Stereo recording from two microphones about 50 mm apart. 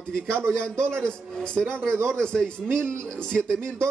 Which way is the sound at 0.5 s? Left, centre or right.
Centre.